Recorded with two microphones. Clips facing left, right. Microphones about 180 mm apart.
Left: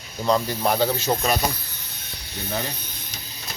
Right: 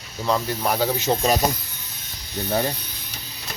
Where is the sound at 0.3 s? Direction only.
Centre (ahead or behind).